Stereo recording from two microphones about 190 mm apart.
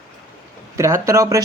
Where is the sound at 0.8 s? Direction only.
15° right (ahead or behind).